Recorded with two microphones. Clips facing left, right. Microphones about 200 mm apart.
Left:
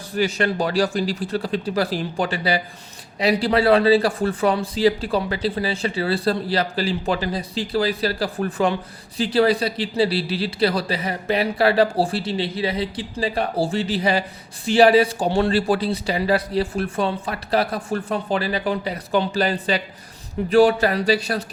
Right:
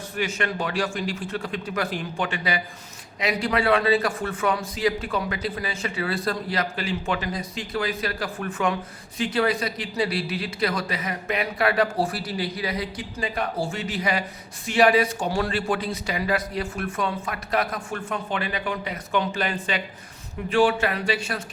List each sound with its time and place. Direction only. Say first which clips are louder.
0.1 s a man's voice: left 6 dB; 35° left (ahead or behind)